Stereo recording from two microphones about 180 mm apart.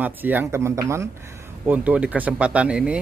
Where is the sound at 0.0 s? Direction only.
10° right (ahead or behind).